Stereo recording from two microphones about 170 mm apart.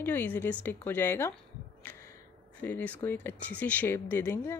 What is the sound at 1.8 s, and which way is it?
Music, 15° left (ahead or behind).